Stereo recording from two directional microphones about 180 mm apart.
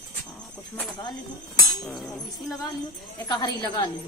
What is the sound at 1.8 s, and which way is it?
Speech, centre (ahead or behind).